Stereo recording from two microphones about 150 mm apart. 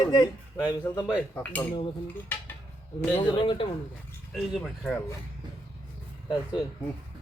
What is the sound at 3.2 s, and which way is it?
Speech, 30° left (ahead or behind).